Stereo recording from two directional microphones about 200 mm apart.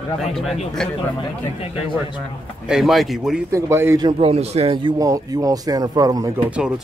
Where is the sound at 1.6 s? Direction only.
25° left (ahead or behind).